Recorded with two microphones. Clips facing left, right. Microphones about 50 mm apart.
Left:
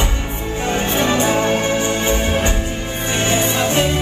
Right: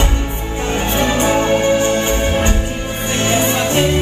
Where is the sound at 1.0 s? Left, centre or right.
Right.